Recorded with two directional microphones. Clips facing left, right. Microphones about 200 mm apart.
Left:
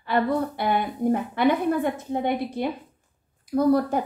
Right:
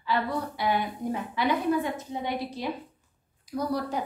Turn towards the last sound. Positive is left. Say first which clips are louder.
# left 9 dB
turn(degrees=55)  # may be behind; listen again after turning